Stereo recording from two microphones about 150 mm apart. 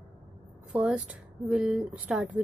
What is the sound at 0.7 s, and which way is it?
Speech, 10° right (ahead or behind).